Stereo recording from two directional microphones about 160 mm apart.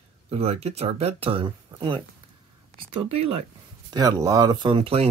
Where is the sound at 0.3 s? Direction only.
40° right (ahead or behind).